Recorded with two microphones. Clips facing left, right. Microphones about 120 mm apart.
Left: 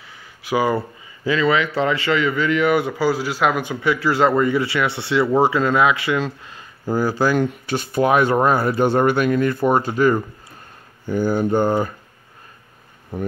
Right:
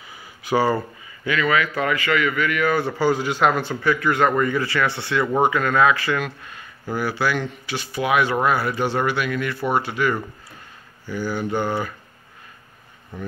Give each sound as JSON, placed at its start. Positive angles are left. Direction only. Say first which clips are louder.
{"t": 0.1, "sound": "a sound", "louder": "even", "side_deg": 0}
{"t": 0.7, "sound": "a man's voice", "louder": "left 3 dB", "side_deg": 30}
{"t": 3.9, "sound": "a man's voice", "louder": "left 2 dB", "side_deg": 25}
{"t": 7.0, "sound": "speech", "louder": "left 5 dB", "side_deg": 40}